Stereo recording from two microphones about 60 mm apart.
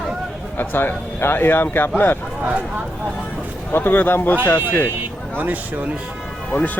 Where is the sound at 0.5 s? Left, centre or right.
Left.